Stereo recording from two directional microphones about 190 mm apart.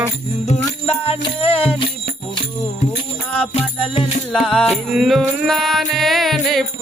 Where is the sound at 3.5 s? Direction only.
35° left (ahead or behind).